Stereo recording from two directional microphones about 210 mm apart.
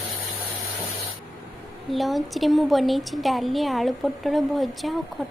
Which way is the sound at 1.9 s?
Centre (ahead or behind).